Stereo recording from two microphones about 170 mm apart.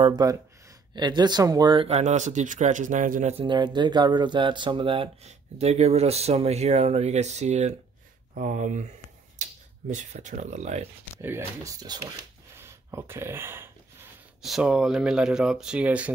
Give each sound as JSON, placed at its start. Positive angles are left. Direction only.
{"t": 0.1, "sound": "speech", "side_deg": -20}
{"t": 3.4, "sound": "speech", "side_deg": -25}
{"t": 11.1, "sound": "speech", "side_deg": -15}
{"t": 14.4, "sound": "speech", "side_deg": -5}